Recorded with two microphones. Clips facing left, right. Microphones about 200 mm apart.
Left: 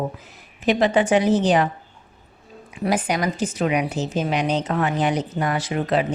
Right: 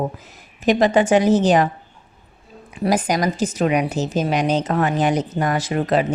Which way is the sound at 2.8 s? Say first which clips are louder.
Right 3 dB; 40° right (ahead or behind).